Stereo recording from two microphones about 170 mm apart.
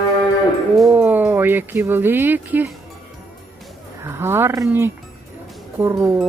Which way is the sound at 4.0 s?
15° right (ahead or behind).